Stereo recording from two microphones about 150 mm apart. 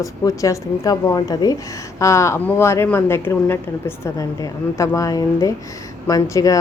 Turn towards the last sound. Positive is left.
turn(degrees=25)  # may be behind; listen again after turning